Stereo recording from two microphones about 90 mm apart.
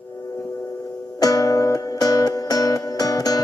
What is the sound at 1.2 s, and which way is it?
Music, 45° left (ahead or behind).